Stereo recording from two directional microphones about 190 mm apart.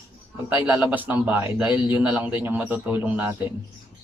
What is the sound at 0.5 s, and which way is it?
Speech, 10° right (ahead or behind).